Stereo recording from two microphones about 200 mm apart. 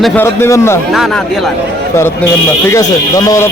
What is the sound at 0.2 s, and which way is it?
Speech, 10° left (ahead or behind).